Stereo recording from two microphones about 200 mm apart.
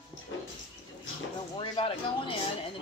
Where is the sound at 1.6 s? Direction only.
30° left (ahead or behind).